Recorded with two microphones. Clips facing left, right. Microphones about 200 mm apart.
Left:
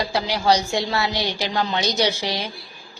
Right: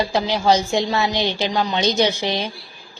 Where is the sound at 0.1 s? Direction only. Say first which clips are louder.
Right 2 dB; 20° right (ahead or behind).